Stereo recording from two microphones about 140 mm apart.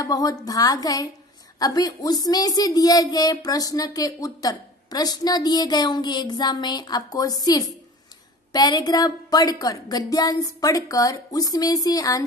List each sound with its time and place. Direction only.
0.0 s a woman's voice: 25° left (ahead or behind)